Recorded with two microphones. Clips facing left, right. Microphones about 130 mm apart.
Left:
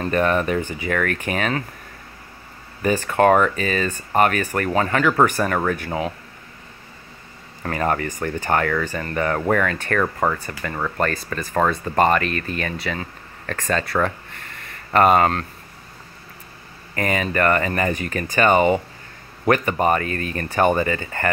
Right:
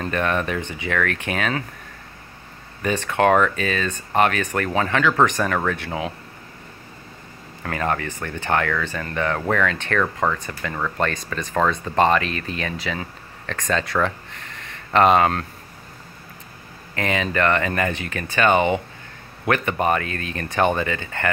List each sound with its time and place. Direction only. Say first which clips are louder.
0.0 s speech: left 3 dB; 10° left (ahead or behind)
3.1 s speech: left 1 dB; 10° left (ahead or behind)
7.6 s speech: left 2 dB; 10° left (ahead or behind)
15.1 s speech: even; 5° right (ahead or behind)
17.2 s speech: left 1 dB; 10° left (ahead or behind)
17.9 s speech: left 3 dB; 90° right
18.3 s speech: left 2 dB; 10° left (ahead or behind)
20.0 s speech: left 3 dB; 90° right
20.3 s speech: left 2 dB; 10° left (ahead or behind)